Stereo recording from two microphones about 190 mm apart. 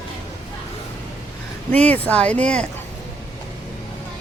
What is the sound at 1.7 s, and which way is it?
Speech, 10° left (ahead or behind).